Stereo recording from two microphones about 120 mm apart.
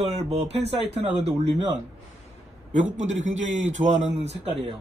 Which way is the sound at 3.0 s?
80° right.